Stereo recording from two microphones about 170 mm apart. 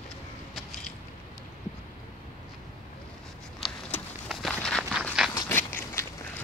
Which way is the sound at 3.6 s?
Centre (ahead or behind).